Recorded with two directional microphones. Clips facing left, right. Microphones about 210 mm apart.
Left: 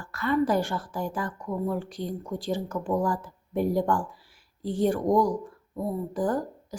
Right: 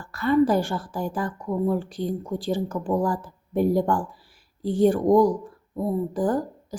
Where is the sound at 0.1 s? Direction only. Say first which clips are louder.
Right 5 dB; 30° right (ahead or behind).